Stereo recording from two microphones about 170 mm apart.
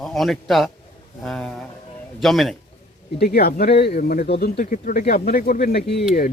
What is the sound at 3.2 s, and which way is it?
Speech, 65° left (ahead or behind).